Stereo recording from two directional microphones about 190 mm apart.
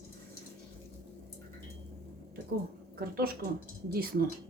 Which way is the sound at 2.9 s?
50° right (ahead or behind).